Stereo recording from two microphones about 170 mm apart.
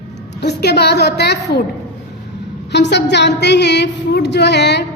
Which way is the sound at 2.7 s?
90° left.